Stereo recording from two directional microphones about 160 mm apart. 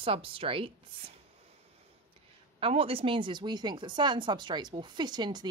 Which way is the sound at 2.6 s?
35° right (ahead or behind).